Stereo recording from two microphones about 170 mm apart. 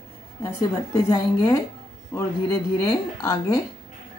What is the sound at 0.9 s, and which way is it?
A woman's voice, 20° left (ahead or behind).